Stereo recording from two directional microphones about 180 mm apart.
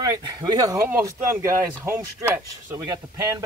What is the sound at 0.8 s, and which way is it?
Speech, 10° right (ahead or behind).